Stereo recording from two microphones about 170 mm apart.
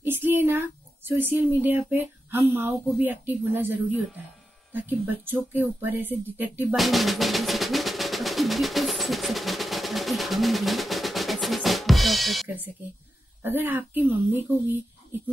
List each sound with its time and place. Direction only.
0.0 s speech: 10° right (ahead or behind)
6.7 s drum: centre (ahead or behind)
13.4 s speech: 10° right (ahead or behind)